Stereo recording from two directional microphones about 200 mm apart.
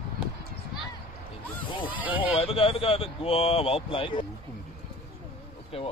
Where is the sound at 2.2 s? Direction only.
30° left (ahead or behind).